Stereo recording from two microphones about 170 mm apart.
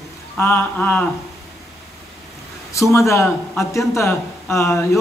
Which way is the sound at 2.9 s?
15° left (ahead or behind).